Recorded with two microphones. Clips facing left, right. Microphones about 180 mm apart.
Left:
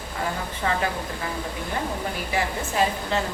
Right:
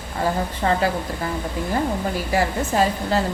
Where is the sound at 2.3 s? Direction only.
40° right (ahead or behind).